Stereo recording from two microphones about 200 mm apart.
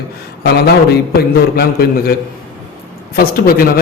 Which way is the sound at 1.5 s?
50° left (ahead or behind).